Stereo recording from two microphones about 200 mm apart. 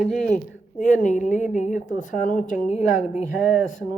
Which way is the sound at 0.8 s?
40° left (ahead or behind).